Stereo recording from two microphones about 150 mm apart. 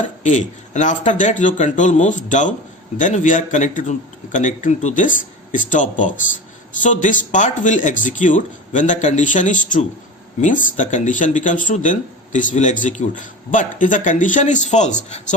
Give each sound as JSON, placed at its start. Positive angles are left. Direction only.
{"t": 0.0, "sound": "speech", "side_deg": 55}